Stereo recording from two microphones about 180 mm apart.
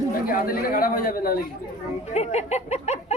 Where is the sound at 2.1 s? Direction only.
35° left (ahead or behind).